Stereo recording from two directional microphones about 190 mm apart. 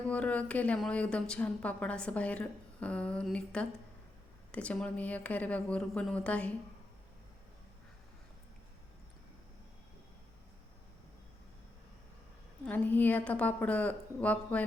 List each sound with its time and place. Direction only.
0.1 s a woman's voice: 5° left (ahead or behind)
12.6 s a woman's voice: 10° left (ahead or behind)